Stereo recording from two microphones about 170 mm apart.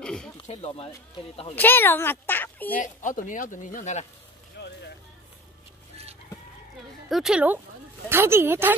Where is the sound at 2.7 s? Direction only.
50° left (ahead or behind).